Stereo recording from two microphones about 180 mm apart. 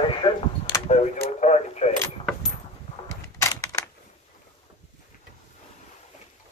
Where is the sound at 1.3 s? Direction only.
40° left (ahead or behind).